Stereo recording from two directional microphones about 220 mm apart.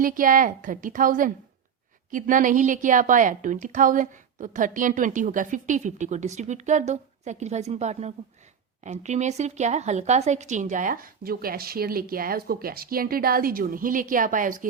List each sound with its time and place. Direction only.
0.0 s a woman's voice: 40° right (ahead or behind)